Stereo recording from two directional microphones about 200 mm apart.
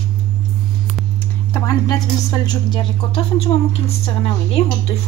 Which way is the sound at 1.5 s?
15° left (ahead or behind).